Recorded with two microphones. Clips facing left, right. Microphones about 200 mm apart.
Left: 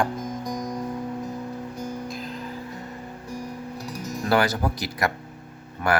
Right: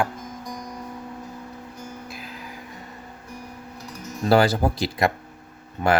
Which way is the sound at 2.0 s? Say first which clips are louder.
Left 6 dB; 5° right (ahead or behind).